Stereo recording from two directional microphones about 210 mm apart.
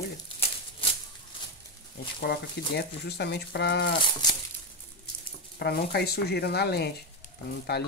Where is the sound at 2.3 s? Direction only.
50° left (ahead or behind).